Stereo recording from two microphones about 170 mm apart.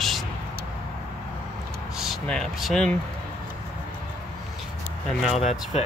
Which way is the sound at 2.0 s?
Centre (ahead or behind).